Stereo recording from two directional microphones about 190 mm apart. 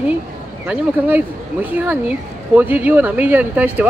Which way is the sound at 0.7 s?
10° right (ahead or behind).